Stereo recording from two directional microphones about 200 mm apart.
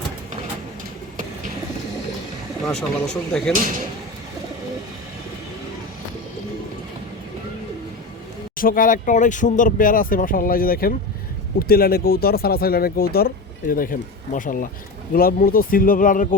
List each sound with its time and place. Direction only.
2.6 s speech: 5° left (ahead or behind)
8.5 s speech: 45° left (ahead or behind)